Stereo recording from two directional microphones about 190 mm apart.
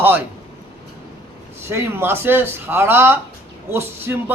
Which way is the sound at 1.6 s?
10° right (ahead or behind).